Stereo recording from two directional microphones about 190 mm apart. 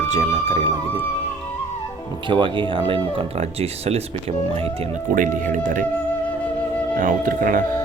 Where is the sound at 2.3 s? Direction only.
25° right (ahead or behind).